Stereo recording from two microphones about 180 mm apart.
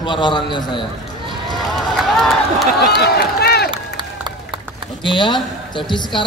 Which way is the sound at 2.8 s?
60° left (ahead or behind).